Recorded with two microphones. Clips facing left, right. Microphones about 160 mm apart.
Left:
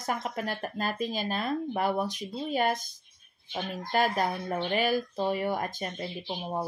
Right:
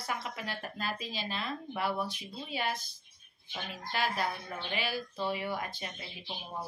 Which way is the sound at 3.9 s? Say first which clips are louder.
Left 6 dB; 45° left (ahead or behind).